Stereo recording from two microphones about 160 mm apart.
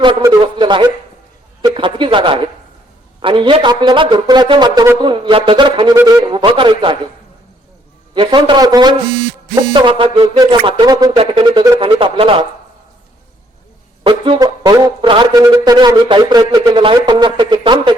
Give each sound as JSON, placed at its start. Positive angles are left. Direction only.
{"t": 0.0, "sound": "a sound", "side_deg": -30}
{"t": 1.6, "sound": "a man's voice", "side_deg": -30}
{"t": 8.1, "sound": "a man's voice", "side_deg": -30}
{"t": 14.0, "sound": "speech", "side_deg": -35}
{"t": 14.4, "sound": "a man's voice", "side_deg": -20}